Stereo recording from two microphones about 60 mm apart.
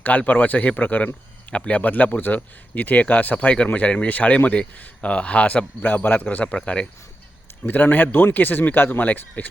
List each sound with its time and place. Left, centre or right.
0.0 s speech: left
7.7 s speech: left